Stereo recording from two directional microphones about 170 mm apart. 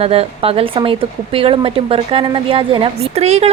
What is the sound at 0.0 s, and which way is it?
Speech, 35° right (ahead or behind).